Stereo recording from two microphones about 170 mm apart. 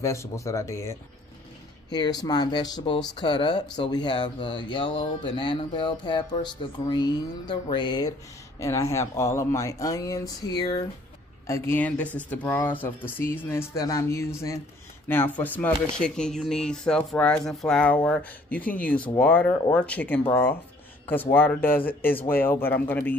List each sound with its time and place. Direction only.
0.0 s speech: 15° left (ahead or behind)